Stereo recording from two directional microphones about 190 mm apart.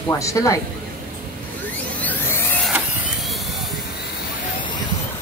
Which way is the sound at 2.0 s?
10° left (ahead or behind).